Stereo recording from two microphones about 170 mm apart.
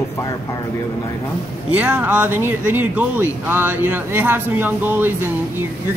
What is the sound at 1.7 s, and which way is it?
Speech, 10° right (ahead or behind).